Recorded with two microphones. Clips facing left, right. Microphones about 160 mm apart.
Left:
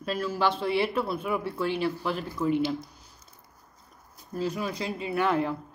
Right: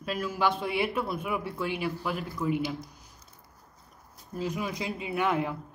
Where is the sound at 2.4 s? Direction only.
Centre (ahead or behind).